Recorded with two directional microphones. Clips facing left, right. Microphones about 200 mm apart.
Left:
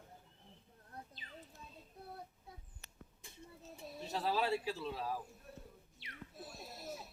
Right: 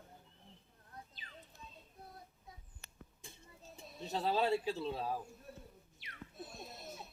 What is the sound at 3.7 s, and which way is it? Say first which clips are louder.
Speech: right 2 dB; 25° right (ahead or behind).